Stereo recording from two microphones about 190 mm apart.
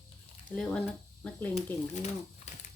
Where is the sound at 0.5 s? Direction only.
5° left (ahead or behind).